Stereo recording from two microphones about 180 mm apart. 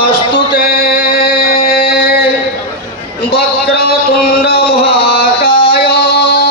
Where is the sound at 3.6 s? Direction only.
60° left (ahead or behind).